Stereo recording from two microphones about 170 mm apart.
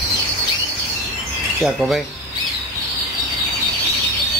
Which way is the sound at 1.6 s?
Centre (ahead or behind).